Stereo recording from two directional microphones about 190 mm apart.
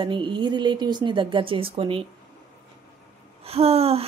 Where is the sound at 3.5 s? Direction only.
30° right (ahead or behind).